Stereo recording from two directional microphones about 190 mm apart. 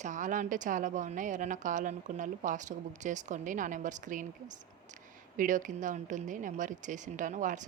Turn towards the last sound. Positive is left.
turn(degrees=-40)  # may be behind; listen again after turning